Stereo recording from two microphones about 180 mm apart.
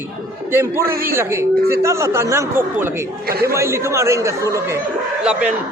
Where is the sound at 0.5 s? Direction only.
15° right (ahead or behind).